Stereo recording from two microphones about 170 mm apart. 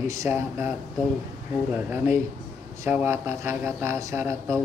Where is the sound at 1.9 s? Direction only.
10° right (ahead or behind).